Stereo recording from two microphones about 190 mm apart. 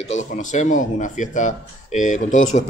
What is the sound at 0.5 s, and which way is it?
Speech, 40° left (ahead or behind).